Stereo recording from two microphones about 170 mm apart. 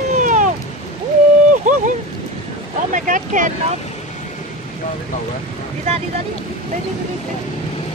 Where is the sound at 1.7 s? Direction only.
50° right (ahead or behind).